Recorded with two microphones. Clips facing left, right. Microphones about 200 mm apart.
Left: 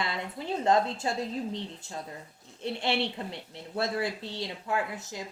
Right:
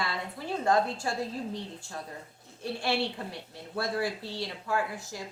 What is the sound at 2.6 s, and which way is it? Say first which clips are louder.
Speech: even; 20° left (ahead or behind).